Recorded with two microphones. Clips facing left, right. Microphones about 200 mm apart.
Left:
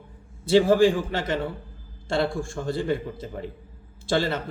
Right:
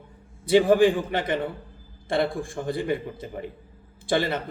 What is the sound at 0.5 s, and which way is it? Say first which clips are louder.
Speech: even; 15° right (ahead or behind).